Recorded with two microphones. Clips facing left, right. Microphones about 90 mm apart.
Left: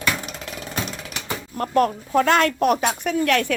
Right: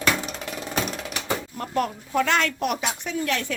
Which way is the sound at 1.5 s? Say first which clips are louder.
Left 10 dB; 50° left (ahead or behind).